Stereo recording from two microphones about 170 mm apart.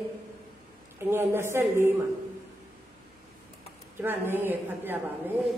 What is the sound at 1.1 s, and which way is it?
Speech, 15° right (ahead or behind).